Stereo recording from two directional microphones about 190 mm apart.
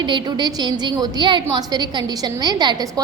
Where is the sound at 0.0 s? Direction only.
25° right (ahead or behind).